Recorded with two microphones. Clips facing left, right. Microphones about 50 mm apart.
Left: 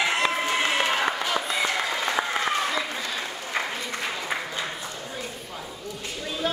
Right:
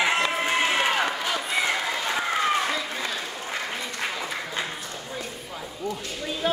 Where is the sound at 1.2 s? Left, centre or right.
Centre.